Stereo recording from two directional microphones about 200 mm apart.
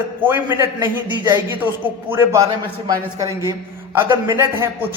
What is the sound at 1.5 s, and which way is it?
A man's voice, 10° right (ahead or behind).